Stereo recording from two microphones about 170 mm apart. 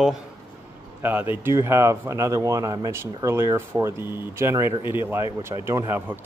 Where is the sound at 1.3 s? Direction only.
15° right (ahead or behind).